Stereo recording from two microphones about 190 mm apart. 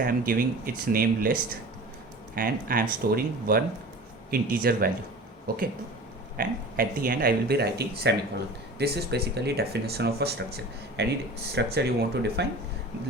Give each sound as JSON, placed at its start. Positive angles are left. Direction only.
{"t": 0.0, "sound": "speech", "side_deg": -50}